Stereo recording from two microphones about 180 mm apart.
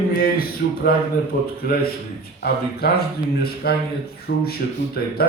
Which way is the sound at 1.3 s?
55° left (ahead or behind).